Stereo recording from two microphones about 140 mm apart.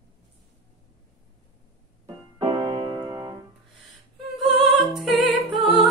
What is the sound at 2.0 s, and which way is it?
Keyboard, 30° right (ahead or behind).